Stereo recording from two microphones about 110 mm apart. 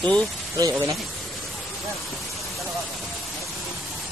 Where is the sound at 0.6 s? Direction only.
35° right (ahead or behind).